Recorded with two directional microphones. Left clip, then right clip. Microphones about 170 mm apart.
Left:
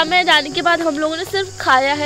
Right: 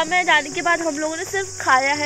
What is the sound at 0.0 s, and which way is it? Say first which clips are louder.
Speech: left 4 dB; 20° left (ahead or behind).